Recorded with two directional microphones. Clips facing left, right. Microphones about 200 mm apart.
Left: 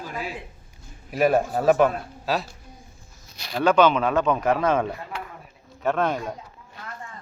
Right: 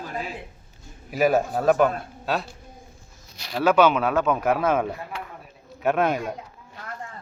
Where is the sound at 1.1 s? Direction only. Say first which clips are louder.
Even; centre (ahead or behind).